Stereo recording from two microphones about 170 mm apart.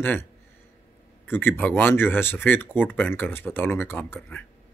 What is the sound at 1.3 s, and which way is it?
Speech, 10° left (ahead or behind).